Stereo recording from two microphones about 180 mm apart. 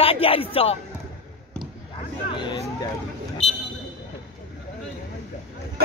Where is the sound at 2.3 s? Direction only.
25° left (ahead or behind).